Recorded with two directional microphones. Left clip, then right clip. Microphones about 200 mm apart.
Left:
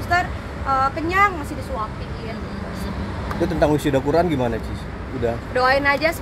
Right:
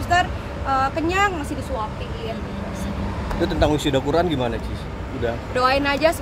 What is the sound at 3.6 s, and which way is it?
Speech, 30° left (ahead or behind).